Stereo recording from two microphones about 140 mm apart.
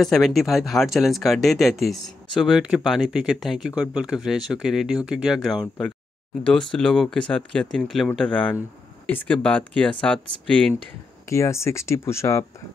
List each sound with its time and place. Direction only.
0.0 s speech: centre (ahead or behind)
11.2 s speech: 20° left (ahead or behind)